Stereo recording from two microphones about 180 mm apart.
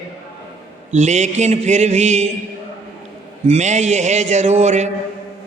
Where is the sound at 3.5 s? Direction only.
40° right (ahead or behind).